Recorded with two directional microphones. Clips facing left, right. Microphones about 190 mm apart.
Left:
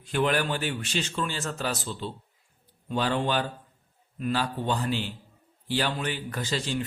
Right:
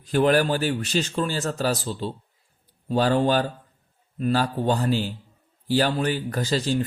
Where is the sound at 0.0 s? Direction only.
40° right (ahead or behind).